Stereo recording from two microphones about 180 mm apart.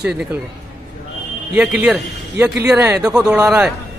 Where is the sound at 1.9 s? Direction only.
10° right (ahead or behind).